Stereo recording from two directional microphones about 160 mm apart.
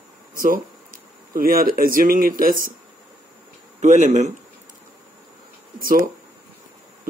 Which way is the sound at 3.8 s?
45° right (ahead or behind).